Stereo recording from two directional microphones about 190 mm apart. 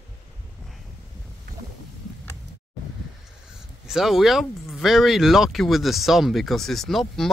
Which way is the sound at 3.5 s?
Centre (ahead or behind).